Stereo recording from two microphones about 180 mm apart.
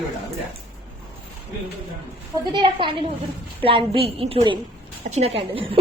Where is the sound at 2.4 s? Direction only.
25° right (ahead or behind).